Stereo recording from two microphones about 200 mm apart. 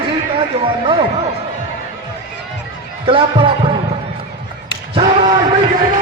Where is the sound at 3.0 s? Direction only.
25° right (ahead or behind).